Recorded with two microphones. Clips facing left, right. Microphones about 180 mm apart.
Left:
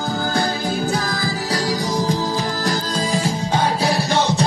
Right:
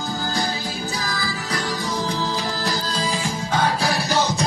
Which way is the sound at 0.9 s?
50° left (ahead or behind).